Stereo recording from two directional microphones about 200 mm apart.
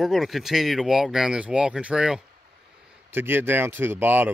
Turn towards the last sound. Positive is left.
turn(degrees=-10)  # may be behind; listen again after turning